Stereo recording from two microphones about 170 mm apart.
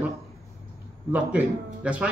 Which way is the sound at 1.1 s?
10° right (ahead or behind).